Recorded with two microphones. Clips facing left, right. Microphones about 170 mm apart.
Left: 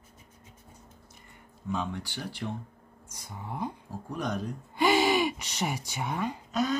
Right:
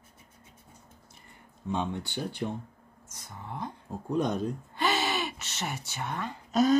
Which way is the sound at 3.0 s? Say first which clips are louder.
Left 2 dB; 10° left (ahead or behind).